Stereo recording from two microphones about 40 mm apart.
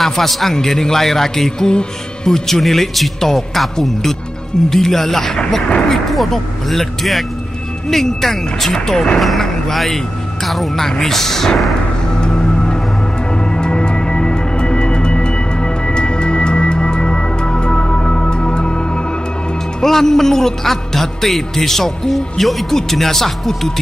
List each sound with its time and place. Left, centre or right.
0.0 s a man's voice: centre
12.2 s music: left
19.8 s a man's voice: centre